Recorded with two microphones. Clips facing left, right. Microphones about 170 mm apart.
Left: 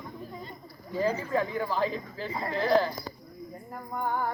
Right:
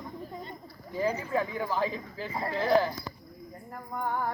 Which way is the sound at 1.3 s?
10° right (ahead or behind).